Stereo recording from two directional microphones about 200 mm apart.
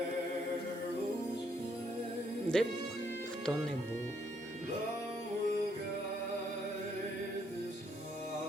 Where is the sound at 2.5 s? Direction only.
5° left (ahead or behind).